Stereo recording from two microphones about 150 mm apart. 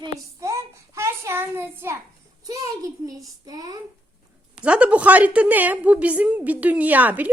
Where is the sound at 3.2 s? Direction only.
25° right (ahead or behind).